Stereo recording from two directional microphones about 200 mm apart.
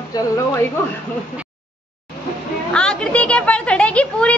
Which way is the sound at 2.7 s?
5° left (ahead or behind).